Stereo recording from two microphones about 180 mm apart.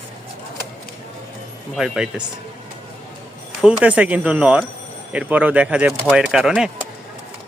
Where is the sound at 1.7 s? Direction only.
5° right (ahead or behind).